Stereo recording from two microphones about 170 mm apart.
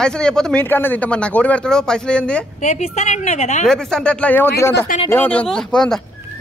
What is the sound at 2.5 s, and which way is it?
Speech, 45° left (ahead or behind).